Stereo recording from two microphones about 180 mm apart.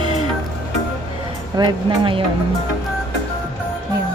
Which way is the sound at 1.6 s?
25° right (ahead or behind).